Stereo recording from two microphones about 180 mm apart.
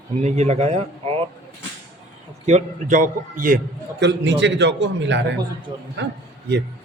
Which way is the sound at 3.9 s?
75° right (ahead or behind).